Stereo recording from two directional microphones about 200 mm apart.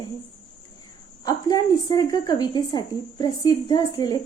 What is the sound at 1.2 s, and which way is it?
Speech, 20° left (ahead or behind).